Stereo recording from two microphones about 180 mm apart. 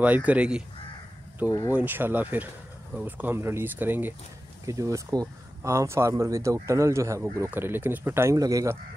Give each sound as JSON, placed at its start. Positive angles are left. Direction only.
{"t": 0.0, "sound": "speech", "side_deg": -10}
{"t": 1.7, "sound": "speech", "side_deg": -10}